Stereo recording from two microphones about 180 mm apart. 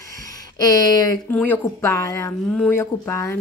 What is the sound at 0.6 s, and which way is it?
Speech, 20° left (ahead or behind).